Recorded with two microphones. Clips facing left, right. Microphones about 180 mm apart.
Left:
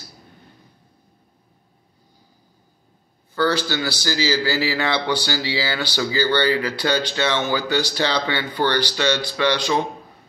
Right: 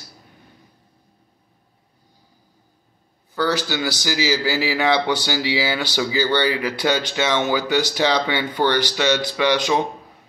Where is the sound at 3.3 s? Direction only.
15° right (ahead or behind).